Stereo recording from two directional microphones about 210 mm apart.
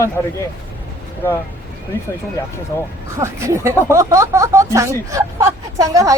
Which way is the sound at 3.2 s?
15° right (ahead or behind).